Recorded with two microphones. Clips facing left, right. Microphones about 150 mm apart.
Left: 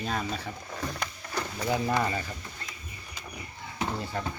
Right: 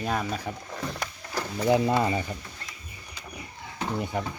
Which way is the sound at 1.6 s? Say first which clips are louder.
Right 5 dB; 20° right (ahead or behind).